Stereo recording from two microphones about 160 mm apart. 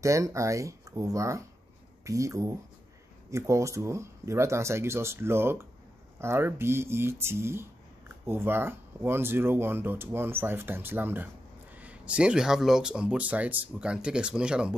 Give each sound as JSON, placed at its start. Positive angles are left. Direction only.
{"t": 0.0, "sound": "speech", "side_deg": -20}